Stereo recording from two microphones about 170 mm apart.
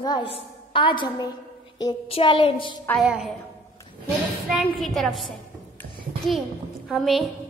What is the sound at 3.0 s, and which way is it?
Speech, 5° right (ahead or behind).